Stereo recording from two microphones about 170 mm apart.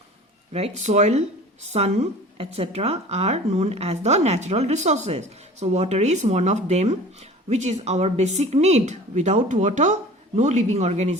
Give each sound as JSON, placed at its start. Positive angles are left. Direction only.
{"t": 0.5, "sound": "a woman's voice", "side_deg": -40}